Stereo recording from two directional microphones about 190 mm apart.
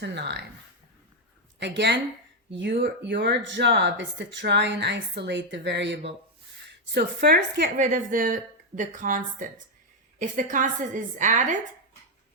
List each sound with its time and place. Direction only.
0.0 s speech: 65° right (ahead or behind)
1.5 s speech: 65° right (ahead or behind)
6.9 s a woman's voice: 55° right (ahead or behind)